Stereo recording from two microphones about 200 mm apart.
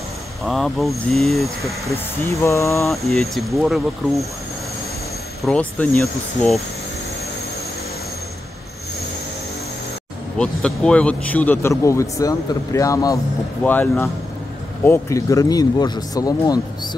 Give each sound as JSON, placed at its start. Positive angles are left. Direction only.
{"t": 0.4, "sound": "speech", "side_deg": 0}
{"t": 2.2, "sound": "speech", "side_deg": 15}
{"t": 2.9, "sound": "speech", "side_deg": 0}
{"t": 5.4, "sound": "speech", "side_deg": 5}
{"t": 10.3, "sound": "speech", "side_deg": 5}